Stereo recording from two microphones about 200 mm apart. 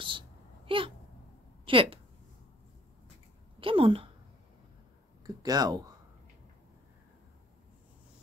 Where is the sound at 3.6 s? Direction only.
25° right (ahead or behind).